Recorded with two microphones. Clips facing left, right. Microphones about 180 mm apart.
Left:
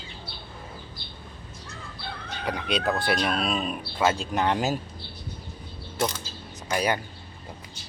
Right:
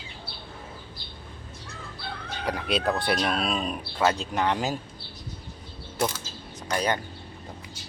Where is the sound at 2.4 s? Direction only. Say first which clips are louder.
Right 1 dB; centre (ahead or behind).